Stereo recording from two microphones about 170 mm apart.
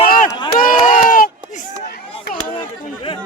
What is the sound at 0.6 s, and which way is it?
Run, 55° left (ahead or behind).